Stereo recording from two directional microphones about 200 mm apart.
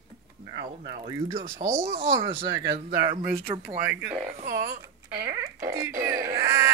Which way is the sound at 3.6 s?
10° right (ahead or behind).